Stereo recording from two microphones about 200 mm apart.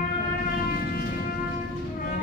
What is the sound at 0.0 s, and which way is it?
Train, 45° left (ahead or behind).